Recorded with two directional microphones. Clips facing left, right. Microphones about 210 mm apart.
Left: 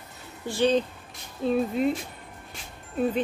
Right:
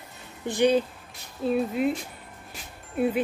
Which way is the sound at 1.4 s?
5° right (ahead or behind).